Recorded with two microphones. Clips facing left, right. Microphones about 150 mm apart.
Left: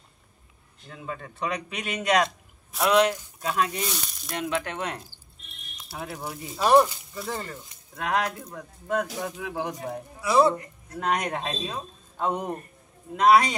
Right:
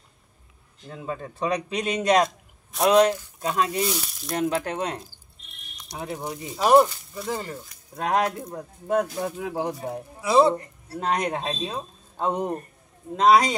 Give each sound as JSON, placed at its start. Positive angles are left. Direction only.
{"t": 0.8, "sound": "a man's voice", "side_deg": -30}
{"t": 3.8, "sound": "speech", "side_deg": -5}
{"t": 4.4, "sound": "speech", "side_deg": -40}
{"t": 4.7, "sound": "a man's voice", "side_deg": -25}
{"t": 6.5, "sound": "speech", "side_deg": -10}
{"t": 7.9, "sound": "a man's voice", "side_deg": -30}
{"t": 9.4, "sound": "speech", "side_deg": -35}
{"t": 9.8, "sound": "a man's voice", "side_deg": -25}